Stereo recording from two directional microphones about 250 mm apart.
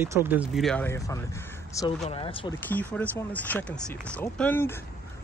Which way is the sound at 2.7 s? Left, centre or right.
Centre.